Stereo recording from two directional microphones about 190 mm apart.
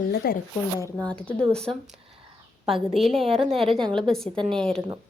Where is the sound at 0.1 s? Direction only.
55° left (ahead or behind).